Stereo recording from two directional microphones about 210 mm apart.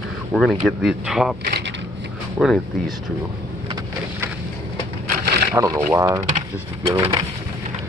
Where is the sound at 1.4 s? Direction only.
45° right (ahead or behind).